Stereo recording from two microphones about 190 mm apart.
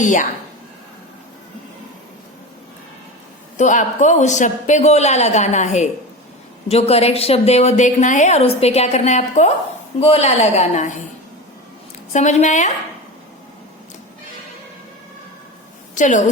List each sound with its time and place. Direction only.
0.0 s a woman's voice: 40° left (ahead or behind)
3.6 s a woman's voice: 40° left (ahead or behind)
12.1 s a woman's voice: 40° left (ahead or behind)
16.0 s a woman's voice: 40° left (ahead or behind)